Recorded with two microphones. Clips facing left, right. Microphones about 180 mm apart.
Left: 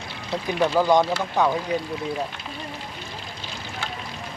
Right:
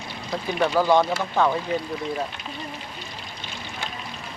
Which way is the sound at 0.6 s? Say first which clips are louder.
Left 1 dB; centre (ahead or behind).